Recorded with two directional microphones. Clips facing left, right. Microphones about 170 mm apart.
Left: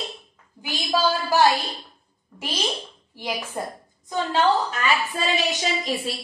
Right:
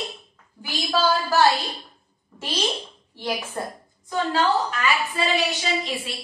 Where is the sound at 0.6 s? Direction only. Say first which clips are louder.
Even; 20° left (ahead or behind).